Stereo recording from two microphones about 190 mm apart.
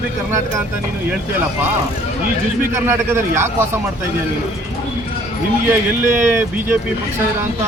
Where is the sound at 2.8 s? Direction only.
15° right (ahead or behind).